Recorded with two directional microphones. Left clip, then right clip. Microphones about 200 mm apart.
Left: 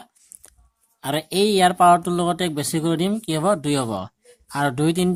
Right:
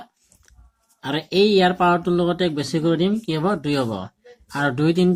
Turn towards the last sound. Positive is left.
turn(degrees=40)  # may be behind; listen again after turning